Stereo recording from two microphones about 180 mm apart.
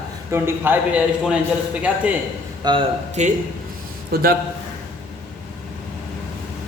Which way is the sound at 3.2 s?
40° right (ahead or behind).